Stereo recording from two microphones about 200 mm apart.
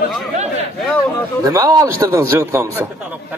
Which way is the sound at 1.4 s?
15° right (ahead or behind).